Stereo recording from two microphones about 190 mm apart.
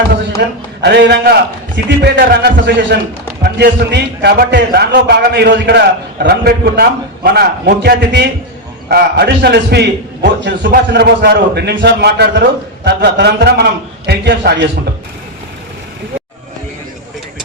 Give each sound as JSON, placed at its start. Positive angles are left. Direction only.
{"t": 0.3, "sound": "a man's voice", "side_deg": -60}